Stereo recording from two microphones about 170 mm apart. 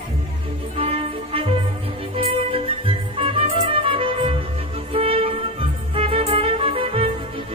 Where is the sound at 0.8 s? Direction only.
35° right (ahead or behind).